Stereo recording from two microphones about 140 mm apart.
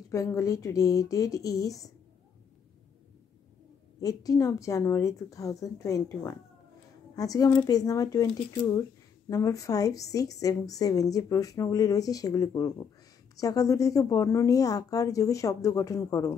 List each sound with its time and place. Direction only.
0.1 s speech: 25° left (ahead or behind)
4.0 s speech: 25° left (ahead or behind)